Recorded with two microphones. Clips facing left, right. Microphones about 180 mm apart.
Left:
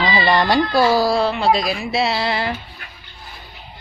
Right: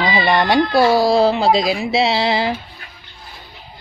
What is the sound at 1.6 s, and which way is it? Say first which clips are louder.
Speech: right 3 dB; 20° right (ahead or behind).